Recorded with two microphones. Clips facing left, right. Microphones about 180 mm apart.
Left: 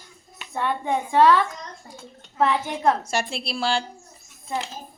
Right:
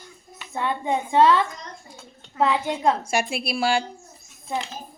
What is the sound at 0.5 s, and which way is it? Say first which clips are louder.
Speech: even; 20° right (ahead or behind).